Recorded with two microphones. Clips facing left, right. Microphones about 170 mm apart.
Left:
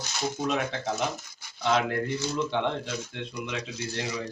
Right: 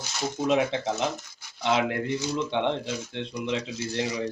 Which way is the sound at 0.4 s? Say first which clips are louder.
Right 6 dB; 25° right (ahead or behind).